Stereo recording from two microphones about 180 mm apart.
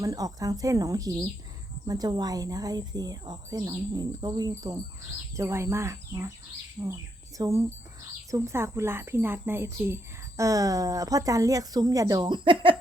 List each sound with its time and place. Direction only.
0.0 s speech: 20° right (ahead or behind)